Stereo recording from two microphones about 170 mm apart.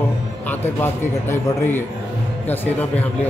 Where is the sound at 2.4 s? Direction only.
10° left (ahead or behind).